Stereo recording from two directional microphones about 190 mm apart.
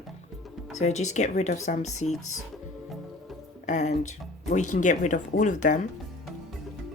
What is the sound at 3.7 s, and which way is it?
Speech, 40° left (ahead or behind).